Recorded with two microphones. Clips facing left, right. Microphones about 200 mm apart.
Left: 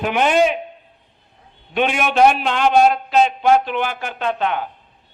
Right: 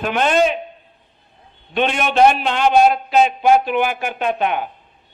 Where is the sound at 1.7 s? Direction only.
10° left (ahead or behind).